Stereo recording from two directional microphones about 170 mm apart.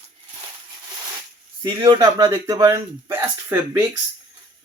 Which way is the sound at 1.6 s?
25° right (ahead or behind).